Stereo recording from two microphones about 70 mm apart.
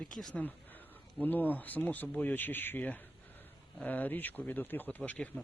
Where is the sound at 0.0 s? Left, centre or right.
Centre.